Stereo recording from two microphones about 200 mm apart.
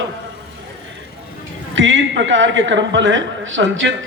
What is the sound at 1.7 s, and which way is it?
A man's voice, 70° right (ahead or behind).